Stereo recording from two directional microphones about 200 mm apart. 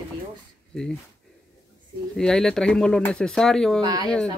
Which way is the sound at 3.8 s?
20° right (ahead or behind).